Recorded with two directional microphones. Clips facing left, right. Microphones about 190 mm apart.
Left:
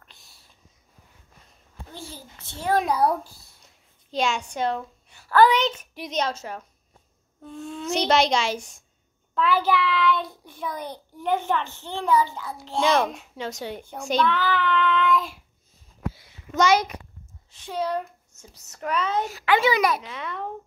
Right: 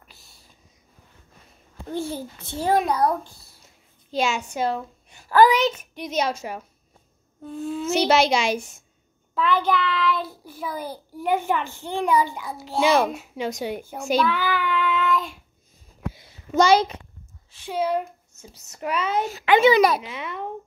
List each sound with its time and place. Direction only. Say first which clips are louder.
0.0 s a sound: right 2 dB; 5° right (ahead or behind)
2.0 s a child's voice: right 13 dB; 55° right (ahead or behind)
2.8 s a child's voice: even; centre (ahead or behind)
16.5 s speech: right 3 dB; 30° right (ahead or behind)
17.5 s a child's voice: right 3 dB; 5° right (ahead or behind)
19.2 s speech: right 7 dB; 20° right (ahead or behind)
20.0 s a child's voice: right 1 dB; 5° right (ahead or behind)